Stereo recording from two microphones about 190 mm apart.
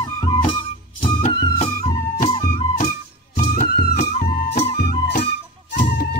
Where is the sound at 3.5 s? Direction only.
60° left (ahead or behind).